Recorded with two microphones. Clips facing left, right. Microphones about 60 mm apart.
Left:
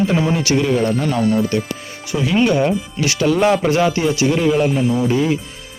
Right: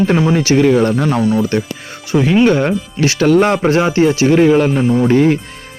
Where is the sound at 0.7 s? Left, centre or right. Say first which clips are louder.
Right 4 dB; right.